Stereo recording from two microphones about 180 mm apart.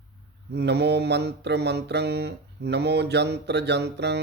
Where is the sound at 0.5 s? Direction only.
70° right (ahead or behind).